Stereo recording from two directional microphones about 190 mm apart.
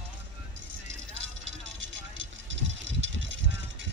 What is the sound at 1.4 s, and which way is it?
Vehicle, 75° right (ahead or behind).